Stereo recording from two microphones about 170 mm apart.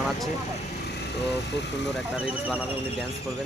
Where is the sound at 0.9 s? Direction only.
80° left.